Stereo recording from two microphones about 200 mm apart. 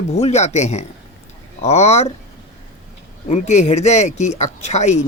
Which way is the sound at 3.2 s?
35° left (ahead or behind).